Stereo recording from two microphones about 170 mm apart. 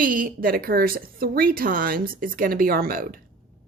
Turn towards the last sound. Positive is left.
turn(degrees=-60)  # may be behind; listen again after turning